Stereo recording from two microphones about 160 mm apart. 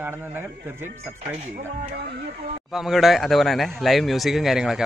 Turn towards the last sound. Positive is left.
turn(degrees=0)  # may be behind; listen again after turning